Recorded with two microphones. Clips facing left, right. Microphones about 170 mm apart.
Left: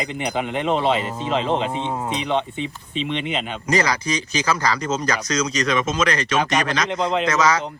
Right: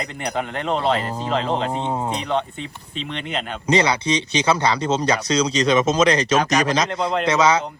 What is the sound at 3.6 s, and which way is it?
Speech, 30° right (ahead or behind).